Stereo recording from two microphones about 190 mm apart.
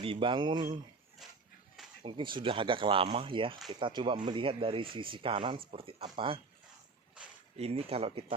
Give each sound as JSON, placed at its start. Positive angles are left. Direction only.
{"t": 0.0, "sound": "speech", "side_deg": -25}
{"t": 1.2, "sound": "a sound", "side_deg": 0}
{"t": 2.0, "sound": "speech", "side_deg": -25}
{"t": 7.5, "sound": "speech", "side_deg": -30}